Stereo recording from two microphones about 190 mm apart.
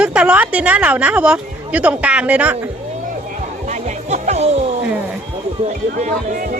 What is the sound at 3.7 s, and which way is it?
Music, 40° right (ahead or behind).